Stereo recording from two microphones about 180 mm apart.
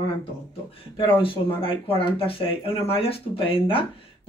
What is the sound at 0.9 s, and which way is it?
Speech, 30° left (ahead or behind).